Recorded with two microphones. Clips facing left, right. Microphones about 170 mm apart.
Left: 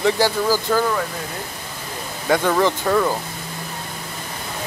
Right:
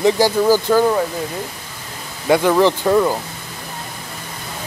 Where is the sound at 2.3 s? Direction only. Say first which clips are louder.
Right 4 dB; 10° right (ahead or behind).